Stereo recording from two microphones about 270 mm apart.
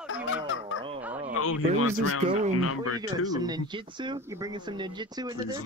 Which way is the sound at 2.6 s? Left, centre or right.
Left.